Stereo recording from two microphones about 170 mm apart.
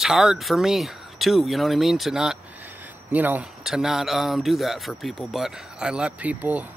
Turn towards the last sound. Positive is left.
turn(degrees=-10)  # may be behind; listen again after turning